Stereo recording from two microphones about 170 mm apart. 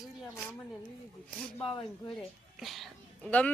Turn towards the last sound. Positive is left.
turn(degrees=10)  # may be behind; listen again after turning